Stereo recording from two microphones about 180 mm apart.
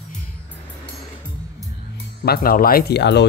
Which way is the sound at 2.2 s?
55° left (ahead or behind).